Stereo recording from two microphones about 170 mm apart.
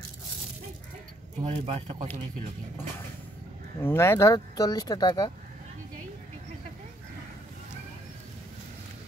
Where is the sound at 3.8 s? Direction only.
15° left (ahead or behind).